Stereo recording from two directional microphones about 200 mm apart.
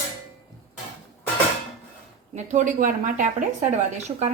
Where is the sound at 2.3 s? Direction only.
35° right (ahead or behind).